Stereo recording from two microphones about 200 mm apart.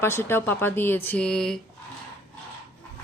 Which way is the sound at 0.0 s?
10° left (ahead or behind).